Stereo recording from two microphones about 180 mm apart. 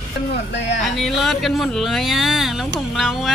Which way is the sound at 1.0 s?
Centre (ahead or behind).